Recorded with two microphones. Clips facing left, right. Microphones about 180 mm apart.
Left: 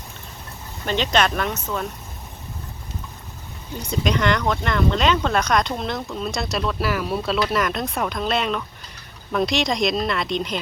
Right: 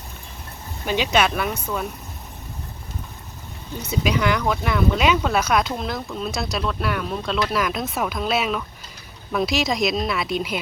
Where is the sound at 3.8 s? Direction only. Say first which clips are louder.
Even; 5° right (ahead or behind).